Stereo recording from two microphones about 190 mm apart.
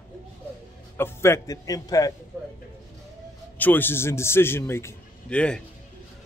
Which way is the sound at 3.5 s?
10° left (ahead or behind).